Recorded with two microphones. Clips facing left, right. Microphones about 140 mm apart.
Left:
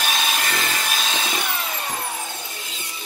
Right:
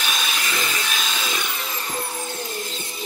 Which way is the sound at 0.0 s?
45° left (ahead or behind).